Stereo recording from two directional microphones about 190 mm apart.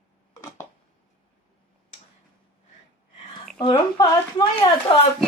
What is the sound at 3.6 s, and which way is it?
A woman's voice, 25° left (ahead or behind).